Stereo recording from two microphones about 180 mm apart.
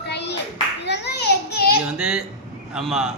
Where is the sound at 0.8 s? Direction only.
70° left (ahead or behind).